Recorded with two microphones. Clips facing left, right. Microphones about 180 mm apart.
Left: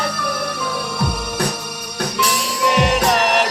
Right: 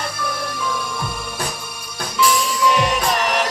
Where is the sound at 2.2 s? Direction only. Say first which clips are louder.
Right 3 dB; 65° left (ahead or behind).